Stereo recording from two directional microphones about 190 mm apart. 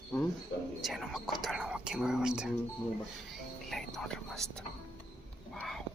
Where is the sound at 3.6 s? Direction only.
Centre (ahead or behind).